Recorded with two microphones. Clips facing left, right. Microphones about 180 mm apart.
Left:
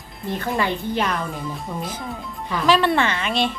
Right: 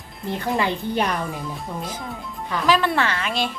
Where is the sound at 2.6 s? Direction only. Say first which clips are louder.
Left 2 dB; 5° right (ahead or behind).